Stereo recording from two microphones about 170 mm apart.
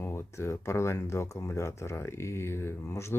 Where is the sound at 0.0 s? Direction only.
15° left (ahead or behind).